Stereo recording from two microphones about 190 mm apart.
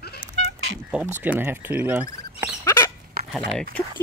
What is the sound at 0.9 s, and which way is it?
Speech, 10° right (ahead or behind).